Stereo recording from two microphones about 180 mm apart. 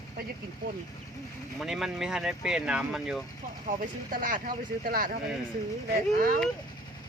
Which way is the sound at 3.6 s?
45° right (ahead or behind).